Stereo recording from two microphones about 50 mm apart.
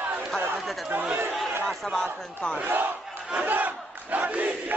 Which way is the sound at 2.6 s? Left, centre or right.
Right.